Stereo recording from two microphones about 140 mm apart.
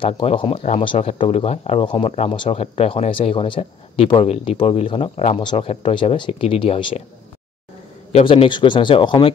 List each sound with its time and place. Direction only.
0.0 s speech: 40° left (ahead or behind)
5.4 s speech: 35° left (ahead or behind)
8.1 s speech: 45° left (ahead or behind)